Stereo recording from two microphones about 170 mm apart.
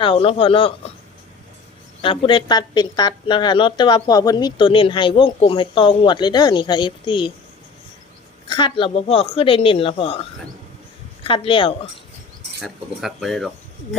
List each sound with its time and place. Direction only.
0.0 s a woman's voice: 30° left (ahead or behind)
2.0 s speech: 30° left (ahead or behind)
8.4 s a woman's voice: 25° left (ahead or behind)
12.6 s speech: centre (ahead or behind)